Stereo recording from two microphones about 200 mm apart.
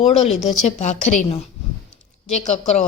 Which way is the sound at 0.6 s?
35° left (ahead or behind).